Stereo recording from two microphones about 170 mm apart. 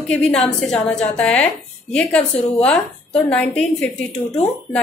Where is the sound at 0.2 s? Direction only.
5° left (ahead or behind).